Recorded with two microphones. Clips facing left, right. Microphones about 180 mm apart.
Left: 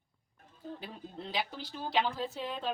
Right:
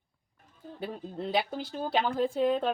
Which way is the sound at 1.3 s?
55° right (ahead or behind).